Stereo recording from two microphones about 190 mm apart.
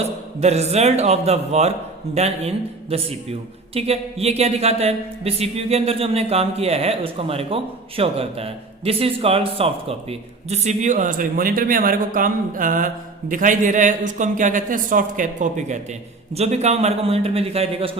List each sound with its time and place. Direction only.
0.3 s speech: 35° right (ahead or behind)